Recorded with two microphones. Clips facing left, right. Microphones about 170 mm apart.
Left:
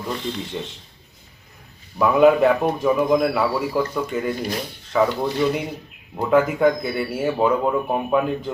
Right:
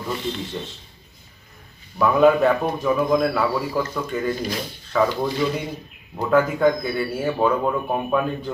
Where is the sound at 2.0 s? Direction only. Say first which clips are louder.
Left 1 dB; 10° left (ahead or behind).